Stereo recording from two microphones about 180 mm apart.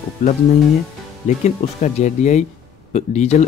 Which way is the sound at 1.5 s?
40° left (ahead or behind).